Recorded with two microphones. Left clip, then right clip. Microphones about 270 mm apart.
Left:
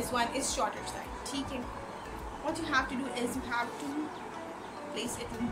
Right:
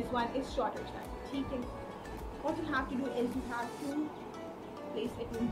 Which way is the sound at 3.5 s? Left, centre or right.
Centre.